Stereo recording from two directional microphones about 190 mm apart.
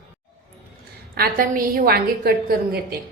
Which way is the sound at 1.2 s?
50° right (ahead or behind).